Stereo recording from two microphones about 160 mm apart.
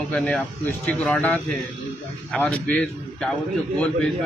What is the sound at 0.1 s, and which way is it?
A man's voice, 5° left (ahead or behind).